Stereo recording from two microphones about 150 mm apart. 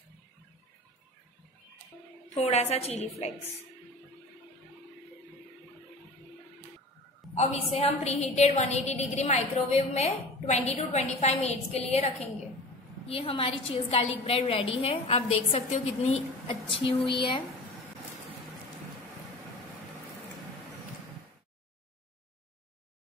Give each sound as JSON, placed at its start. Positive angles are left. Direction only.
{"t": 2.3, "sound": "a woman's voice", "side_deg": 45}
{"t": 7.3, "sound": "a woman's voice", "side_deg": 45}